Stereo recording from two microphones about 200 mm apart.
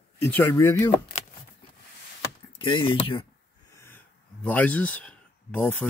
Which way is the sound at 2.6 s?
25° left (ahead or behind).